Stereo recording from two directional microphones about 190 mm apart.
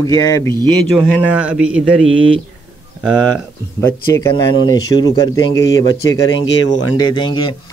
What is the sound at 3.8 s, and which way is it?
Speech, 15° left (ahead or behind).